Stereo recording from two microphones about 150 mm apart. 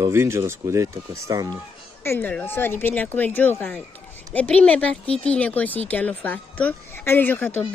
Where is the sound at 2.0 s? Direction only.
15° left (ahead or behind).